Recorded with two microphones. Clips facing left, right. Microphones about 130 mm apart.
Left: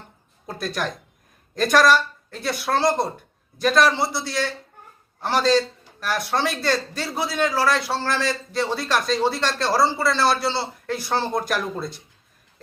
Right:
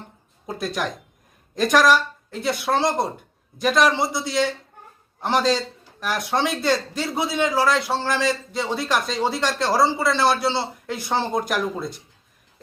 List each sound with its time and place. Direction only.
0.4 s a man's voice: 15° right (ahead or behind)